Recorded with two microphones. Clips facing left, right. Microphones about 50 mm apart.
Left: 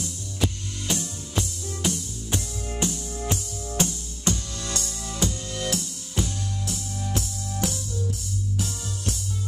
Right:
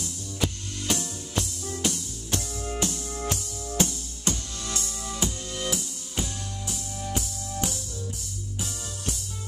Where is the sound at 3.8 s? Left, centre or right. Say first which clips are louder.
Left 2 dB; left.